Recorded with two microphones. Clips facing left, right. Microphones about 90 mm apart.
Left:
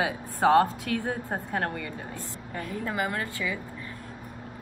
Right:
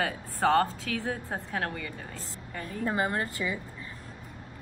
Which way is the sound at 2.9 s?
30° right (ahead or behind).